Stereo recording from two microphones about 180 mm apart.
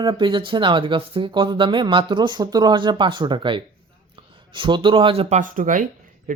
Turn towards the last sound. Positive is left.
turn(degrees=-45)  # may be behind; listen again after turning